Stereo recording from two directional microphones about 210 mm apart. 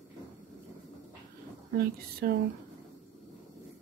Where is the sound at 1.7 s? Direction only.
45° right (ahead or behind).